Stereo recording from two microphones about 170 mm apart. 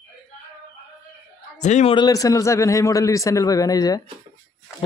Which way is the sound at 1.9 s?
20° left (ahead or behind).